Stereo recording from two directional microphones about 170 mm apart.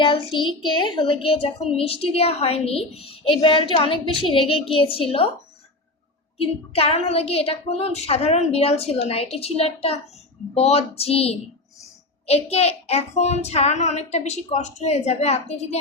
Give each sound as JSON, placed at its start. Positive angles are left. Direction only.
{"t": 0.0, "sound": "a woman's voice", "side_deg": 30}
{"t": 6.4, "sound": "a woman's voice", "side_deg": 35}